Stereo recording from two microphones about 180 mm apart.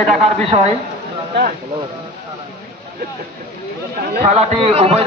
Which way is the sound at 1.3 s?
70° right (ahead or behind).